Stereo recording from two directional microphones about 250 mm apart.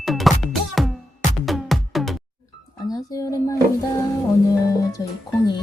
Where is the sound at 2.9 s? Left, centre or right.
Centre.